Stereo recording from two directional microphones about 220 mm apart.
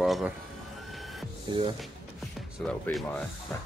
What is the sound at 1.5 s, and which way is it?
Speech, 20° right (ahead or behind).